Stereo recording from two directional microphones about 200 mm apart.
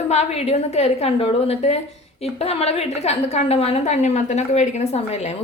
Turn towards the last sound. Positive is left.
turn(degrees=30)  # may be behind; listen again after turning